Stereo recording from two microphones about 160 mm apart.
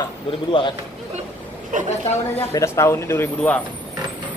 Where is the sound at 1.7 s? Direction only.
50° right (ahead or behind).